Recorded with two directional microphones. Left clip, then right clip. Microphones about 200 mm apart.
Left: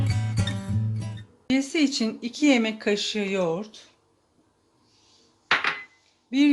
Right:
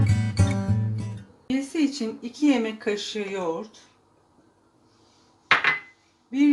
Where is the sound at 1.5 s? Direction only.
50° left (ahead or behind).